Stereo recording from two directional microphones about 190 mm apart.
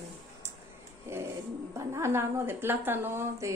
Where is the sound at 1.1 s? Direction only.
15° right (ahead or behind).